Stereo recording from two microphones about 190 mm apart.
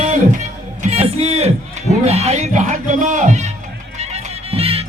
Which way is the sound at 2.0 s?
35° right (ahead or behind).